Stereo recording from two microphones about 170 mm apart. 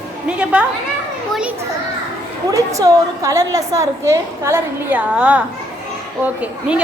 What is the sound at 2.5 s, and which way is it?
A woman's voice, 20° right (ahead or behind).